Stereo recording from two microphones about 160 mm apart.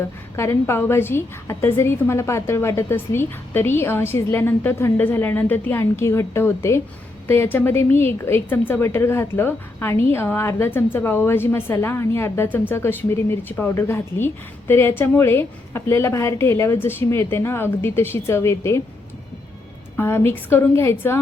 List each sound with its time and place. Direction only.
0.3 s a woman's voice: 15° left (ahead or behind)
20.0 s a woman's voice: 15° left (ahead or behind)